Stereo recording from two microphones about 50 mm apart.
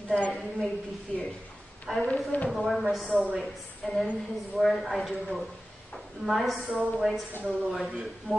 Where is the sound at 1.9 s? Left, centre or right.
Centre.